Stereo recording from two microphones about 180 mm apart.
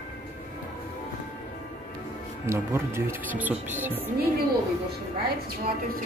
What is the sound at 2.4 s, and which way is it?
Speech, 15° right (ahead or behind).